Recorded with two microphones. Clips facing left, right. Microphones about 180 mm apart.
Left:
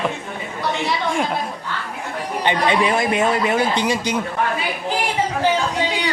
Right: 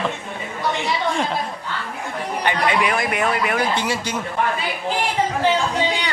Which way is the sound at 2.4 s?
25° left (ahead or behind).